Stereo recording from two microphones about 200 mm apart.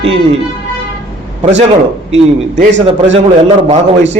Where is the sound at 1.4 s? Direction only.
35° right (ahead or behind).